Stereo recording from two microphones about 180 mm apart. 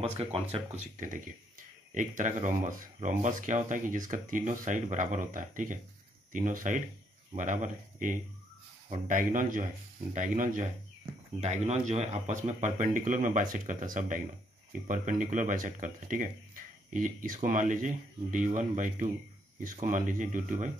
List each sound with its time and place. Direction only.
0.0 s speech: 35° right (ahead or behind)